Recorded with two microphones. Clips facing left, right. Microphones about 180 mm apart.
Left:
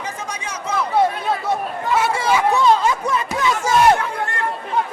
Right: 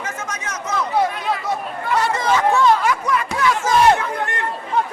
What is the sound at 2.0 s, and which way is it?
Chatter, 10° left (ahead or behind).